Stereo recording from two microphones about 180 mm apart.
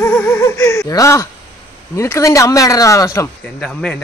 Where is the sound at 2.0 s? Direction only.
15° left (ahead or behind).